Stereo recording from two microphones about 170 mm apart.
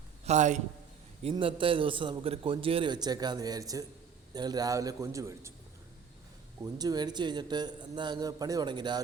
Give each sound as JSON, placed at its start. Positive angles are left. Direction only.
{"t": 0.3, "sound": "a man's voice", "side_deg": -45}
{"t": 1.2, "sound": "a man's voice", "side_deg": -30}
{"t": 6.6, "sound": "a man's voice", "side_deg": -20}